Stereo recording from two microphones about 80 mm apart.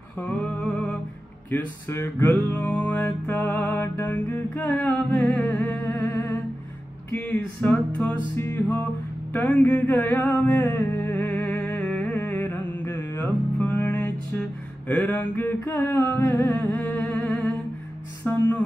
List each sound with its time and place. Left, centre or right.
0.2 s music: centre
1.5 s music: left
3.9 s humming: left
5.8 s humming: left
6.1 s humming: left
7.1 s speech: centre
7.6 s humming: centre
8.4 s music: left
13.6 s music: left
15.6 s music: left; by 17.0 s centre
17.0 s humming: centre
18.2 s music: left